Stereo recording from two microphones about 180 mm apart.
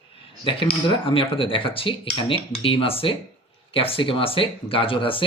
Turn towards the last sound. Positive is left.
turn(degrees=30)  # may be behind; listen again after turning